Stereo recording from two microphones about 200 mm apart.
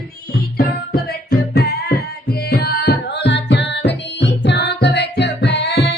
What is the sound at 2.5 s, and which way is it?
Music, 50° left (ahead or behind).